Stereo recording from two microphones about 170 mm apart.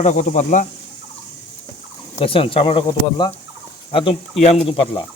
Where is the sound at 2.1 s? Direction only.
30° left (ahead or behind).